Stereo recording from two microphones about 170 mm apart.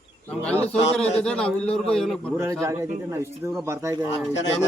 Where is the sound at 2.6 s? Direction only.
15° right (ahead or behind).